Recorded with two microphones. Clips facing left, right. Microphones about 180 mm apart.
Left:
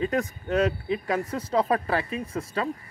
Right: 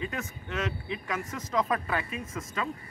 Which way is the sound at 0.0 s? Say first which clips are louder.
Left 9 dB; 40° left (ahead or behind).